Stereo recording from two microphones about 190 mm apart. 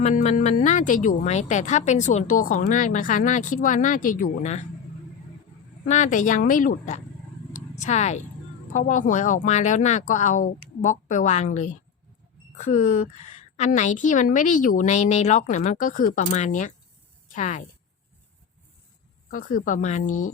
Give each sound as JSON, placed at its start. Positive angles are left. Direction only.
{"t": 0.0, "sound": "speech", "side_deg": 35}
{"t": 5.9, "sound": "speech", "side_deg": 40}
{"t": 19.3, "sound": "speech", "side_deg": 45}